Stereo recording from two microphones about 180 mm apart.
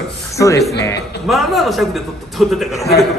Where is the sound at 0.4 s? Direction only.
15° left (ahead or behind).